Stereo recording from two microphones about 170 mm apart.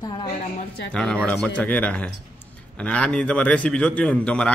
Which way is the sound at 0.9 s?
5° left (ahead or behind).